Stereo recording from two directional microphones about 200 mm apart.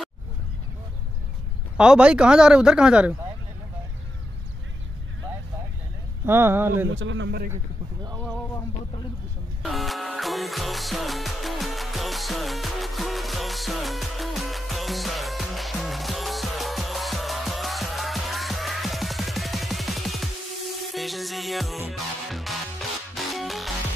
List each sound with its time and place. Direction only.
1.8 s speech: 5° right (ahead or behind)
6.2 s speech: 10° right (ahead or behind)
6.9 s speech: 70° right (ahead or behind)
9.6 s music: centre (ahead or behind)